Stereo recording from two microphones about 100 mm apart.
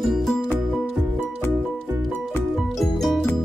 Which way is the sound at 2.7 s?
Centre (ahead or behind).